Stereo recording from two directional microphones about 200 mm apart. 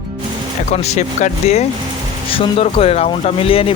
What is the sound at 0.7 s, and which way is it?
Speech, 35° left (ahead or behind).